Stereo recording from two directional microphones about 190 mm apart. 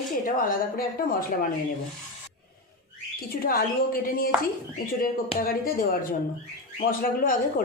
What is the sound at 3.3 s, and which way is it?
A woman's voice, 50° left (ahead or behind).